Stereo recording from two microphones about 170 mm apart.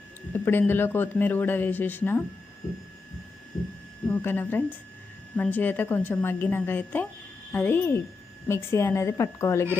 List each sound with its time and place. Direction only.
0.3 s speech: 15° left (ahead or behind)
4.1 s speech: 10° left (ahead or behind)